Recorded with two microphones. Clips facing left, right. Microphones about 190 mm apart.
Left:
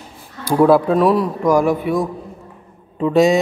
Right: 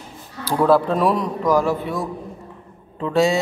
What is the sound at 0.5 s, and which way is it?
Speech, 15° left (ahead or behind).